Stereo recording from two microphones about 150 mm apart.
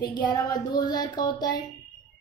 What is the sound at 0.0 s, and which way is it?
A woman's voice, 30° left (ahead or behind).